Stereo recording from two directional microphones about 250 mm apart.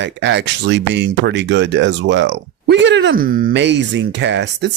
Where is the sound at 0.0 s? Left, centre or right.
Right.